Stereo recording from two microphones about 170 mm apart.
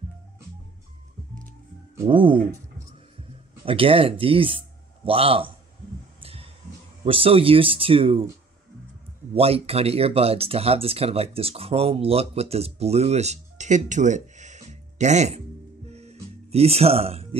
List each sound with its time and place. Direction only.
2.0 s speech: 30° right (ahead or behind)
3.6 s speech: 35° right (ahead or behind)
6.2 s a sound: 35° right (ahead or behind)
7.1 s speech: 30° right (ahead or behind)
9.3 s speech: 35° right (ahead or behind)
15.9 s music: 40° right (ahead or behind)